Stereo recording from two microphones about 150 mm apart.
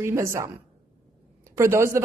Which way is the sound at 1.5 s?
20° right (ahead or behind).